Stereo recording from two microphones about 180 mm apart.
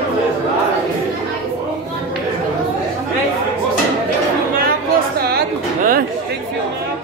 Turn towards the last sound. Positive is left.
turn(degrees=-55)  # may be behind; listen again after turning